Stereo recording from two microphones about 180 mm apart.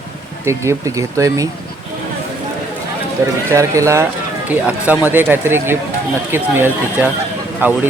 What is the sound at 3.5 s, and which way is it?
Speech, 15° right (ahead or behind).